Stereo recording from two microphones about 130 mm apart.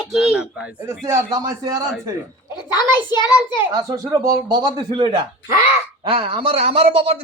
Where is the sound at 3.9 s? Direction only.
25° right (ahead or behind); by 7.1 s 50° right (ahead or behind).